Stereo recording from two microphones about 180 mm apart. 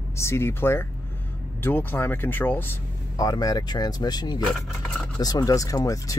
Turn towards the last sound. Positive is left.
turn(degrees=20)  # may be behind; listen again after turning